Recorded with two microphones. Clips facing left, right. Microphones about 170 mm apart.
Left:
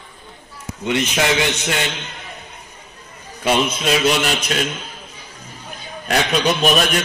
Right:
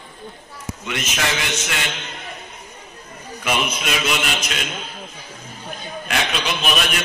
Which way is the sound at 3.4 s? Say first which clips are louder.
Left 5 dB; 30° left (ahead or behind).